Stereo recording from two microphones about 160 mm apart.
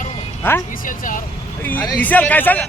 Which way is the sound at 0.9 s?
55° left (ahead or behind).